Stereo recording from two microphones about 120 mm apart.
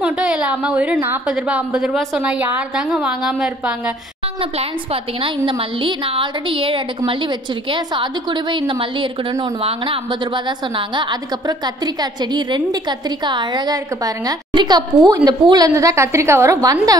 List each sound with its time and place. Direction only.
0.0 s a woman's voice: 10° right (ahead or behind)
5.2 s a woman's voice: 45° right (ahead or behind)
11.0 s a woman's voice: 35° right (ahead or behind)